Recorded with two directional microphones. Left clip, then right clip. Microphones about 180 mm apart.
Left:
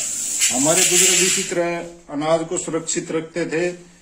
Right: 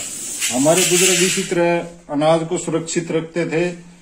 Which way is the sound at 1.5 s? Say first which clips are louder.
Right 5 dB; 35° right (ahead or behind).